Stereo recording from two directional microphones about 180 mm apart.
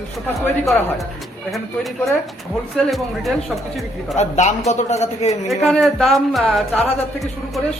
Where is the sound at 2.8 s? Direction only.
Centre (ahead or behind).